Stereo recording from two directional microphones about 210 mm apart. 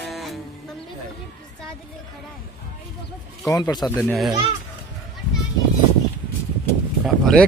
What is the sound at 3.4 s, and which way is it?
Speech, 15° left (ahead or behind).